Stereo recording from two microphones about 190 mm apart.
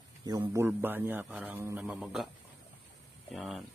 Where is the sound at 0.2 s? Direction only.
20° right (ahead or behind); by 2.2 s centre (ahead or behind).